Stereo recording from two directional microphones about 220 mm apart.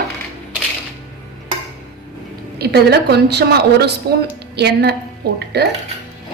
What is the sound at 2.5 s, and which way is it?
A woman's voice, 50° right (ahead or behind).